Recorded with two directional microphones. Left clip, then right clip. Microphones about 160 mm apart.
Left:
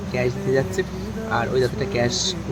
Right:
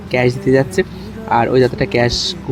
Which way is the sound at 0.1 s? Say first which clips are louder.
Right 8 dB; 45° right (ahead or behind).